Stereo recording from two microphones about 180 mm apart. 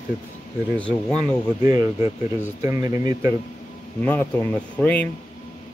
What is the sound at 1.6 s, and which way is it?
Speech, 15° right (ahead or behind).